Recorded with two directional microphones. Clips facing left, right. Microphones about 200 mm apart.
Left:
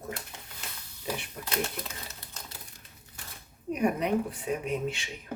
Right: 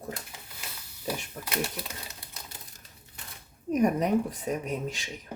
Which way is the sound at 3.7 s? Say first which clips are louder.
Right 3 dB; 40° right (ahead or behind).